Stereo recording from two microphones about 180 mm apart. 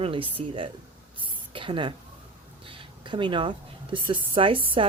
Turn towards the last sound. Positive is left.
turn(degrees=-30)  # may be behind; listen again after turning